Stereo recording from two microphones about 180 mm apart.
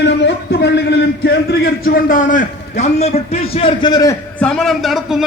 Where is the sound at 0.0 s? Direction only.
75° left (ahead or behind).